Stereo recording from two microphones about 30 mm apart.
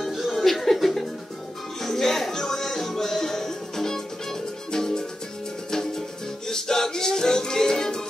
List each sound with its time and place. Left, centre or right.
0.3 s music: centre; by 8.0 s left